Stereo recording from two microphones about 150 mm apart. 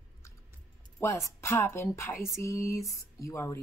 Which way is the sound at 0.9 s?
15° left (ahead or behind).